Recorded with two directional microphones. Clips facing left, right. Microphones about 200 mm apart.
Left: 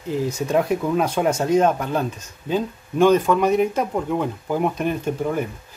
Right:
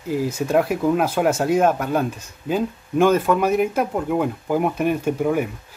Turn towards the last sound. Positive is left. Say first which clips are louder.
# right 3 dB
turn(degrees=-10)  # may be behind; listen again after turning